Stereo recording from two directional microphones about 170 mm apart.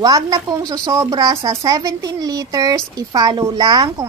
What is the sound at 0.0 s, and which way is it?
Speech, 20° right (ahead or behind).